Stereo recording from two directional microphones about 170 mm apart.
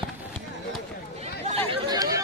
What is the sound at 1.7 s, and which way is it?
Chatter, 25° right (ahead or behind).